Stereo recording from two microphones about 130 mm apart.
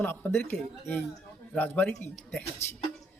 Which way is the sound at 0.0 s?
15° left (ahead or behind).